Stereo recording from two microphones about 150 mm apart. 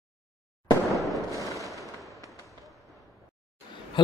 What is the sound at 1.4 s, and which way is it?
Fireworks, 20° left (ahead or behind).